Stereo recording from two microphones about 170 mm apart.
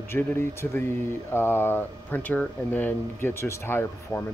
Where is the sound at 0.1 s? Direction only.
15° left (ahead or behind).